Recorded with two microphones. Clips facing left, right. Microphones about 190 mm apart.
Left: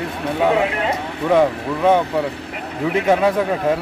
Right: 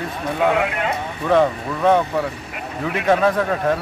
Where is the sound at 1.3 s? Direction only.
15° left (ahead or behind).